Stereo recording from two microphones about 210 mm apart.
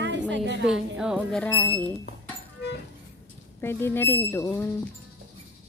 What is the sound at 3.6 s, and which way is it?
Speech, 10° left (ahead or behind).